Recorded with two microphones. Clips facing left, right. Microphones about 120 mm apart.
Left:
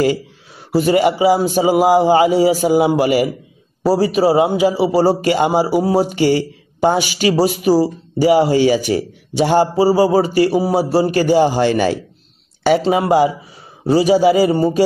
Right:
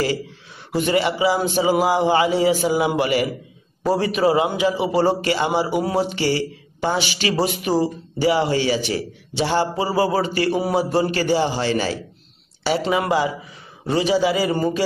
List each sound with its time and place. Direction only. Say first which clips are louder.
0.6 s a man's voice: left 6 dB; 40° left (ahead or behind)
13.8 s a man's voice: left 7 dB; 40° left (ahead or behind)